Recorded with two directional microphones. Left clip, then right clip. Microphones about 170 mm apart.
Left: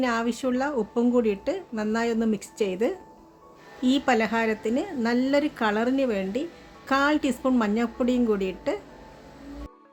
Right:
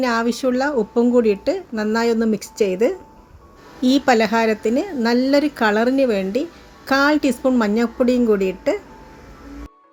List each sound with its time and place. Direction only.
0.0 s a woman's voice: 15° right (ahead or behind)